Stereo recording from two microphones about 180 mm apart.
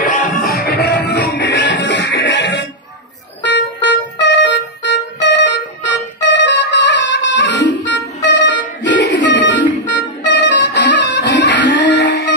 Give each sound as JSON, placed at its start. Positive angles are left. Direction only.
{"t": 0.0, "sound": "music", "side_deg": 45}
{"t": 1.0, "sound": "music", "side_deg": 75}